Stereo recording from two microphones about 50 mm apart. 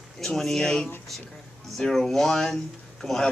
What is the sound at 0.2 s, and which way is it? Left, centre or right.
A woman's voice, centre.